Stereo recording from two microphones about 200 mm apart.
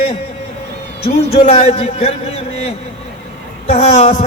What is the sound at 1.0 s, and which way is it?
A man's voice, 30° left (ahead or behind).